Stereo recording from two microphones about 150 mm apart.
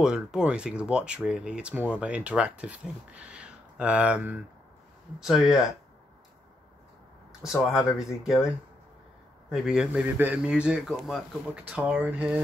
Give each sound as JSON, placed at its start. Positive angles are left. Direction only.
{"t": 0.0, "sound": "speech", "side_deg": -5}
{"t": 7.4, "sound": "speech", "side_deg": 0}
{"t": 9.5, "sound": "speech", "side_deg": -5}